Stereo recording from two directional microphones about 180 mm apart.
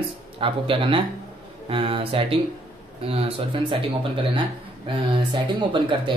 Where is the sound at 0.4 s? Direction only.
30° right (ahead or behind).